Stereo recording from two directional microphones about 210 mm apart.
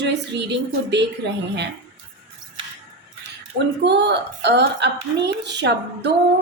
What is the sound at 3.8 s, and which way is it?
A woman's voice, 55° right (ahead or behind).